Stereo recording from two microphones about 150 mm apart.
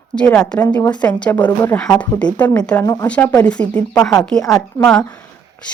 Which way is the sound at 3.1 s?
10° left (ahead or behind).